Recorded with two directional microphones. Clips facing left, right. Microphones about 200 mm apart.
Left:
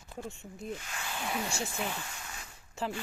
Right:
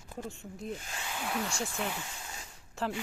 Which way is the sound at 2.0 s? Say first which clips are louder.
Even; 20° right (ahead or behind).